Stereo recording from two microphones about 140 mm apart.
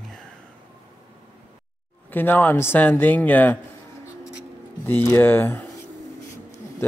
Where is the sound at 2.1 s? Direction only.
15° left (ahead or behind).